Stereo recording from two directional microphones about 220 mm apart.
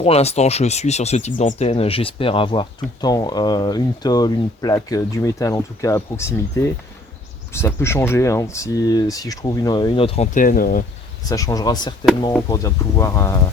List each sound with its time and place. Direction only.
0.0 s speech: 30° left (ahead or behind); by 6.3 s 10° left (ahead or behind)
7.5 s speech: 10° left (ahead or behind); by 10.8 s 40° left (ahead or behind)
11.3 s speech: 15° left (ahead or behind)